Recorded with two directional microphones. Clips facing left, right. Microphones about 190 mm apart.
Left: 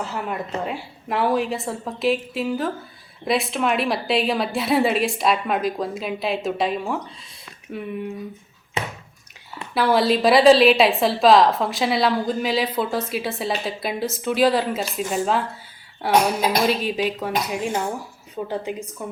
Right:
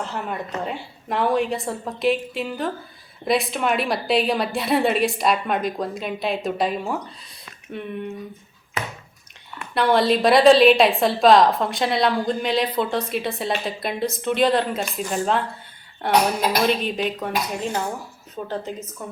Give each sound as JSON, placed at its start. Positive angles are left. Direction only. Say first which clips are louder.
{"t": 0.0, "sound": "a woman's voice", "louder": "left 1 dB", "side_deg": 5}
{"t": 8.8, "sound": "a sound", "louder": "left 2 dB", "side_deg": 25}
{"t": 9.7, "sound": "a woman's voice", "louder": "even", "side_deg": 5}